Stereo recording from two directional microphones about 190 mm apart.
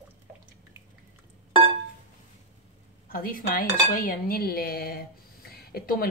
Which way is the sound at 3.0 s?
50° left (ahead or behind).